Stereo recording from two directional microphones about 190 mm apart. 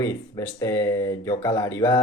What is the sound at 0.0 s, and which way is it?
Speech, 15° left (ahead or behind).